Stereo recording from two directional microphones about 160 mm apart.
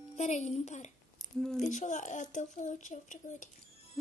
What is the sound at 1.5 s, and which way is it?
Speech, 50° left (ahead or behind).